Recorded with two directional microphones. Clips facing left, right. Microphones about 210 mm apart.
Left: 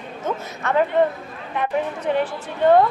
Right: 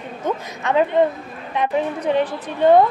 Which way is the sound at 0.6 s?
15° right (ahead or behind).